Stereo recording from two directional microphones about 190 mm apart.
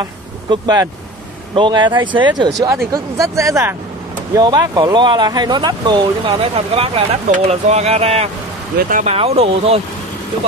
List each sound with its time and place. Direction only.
0.0 s speech: 20° right (ahead or behind)